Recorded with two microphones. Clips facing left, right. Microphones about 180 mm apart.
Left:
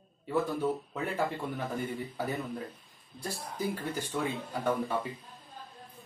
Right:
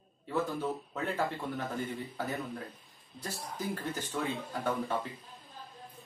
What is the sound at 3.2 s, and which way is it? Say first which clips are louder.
Speech: left 3 dB; 10° left (ahead or behind).